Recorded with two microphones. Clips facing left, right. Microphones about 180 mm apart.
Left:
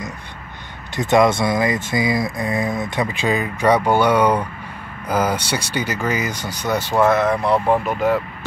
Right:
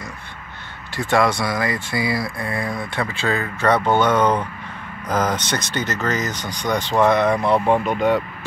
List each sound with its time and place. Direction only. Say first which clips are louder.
0.9 s speech: left 4 dB; 20° left (ahead or behind); by 8.2 s 5° left (ahead or behind)